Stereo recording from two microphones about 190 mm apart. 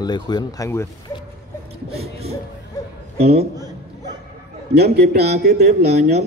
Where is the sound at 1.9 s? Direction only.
30° right (ahead or behind).